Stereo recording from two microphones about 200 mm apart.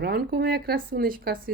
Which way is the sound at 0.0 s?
50° right (ahead or behind).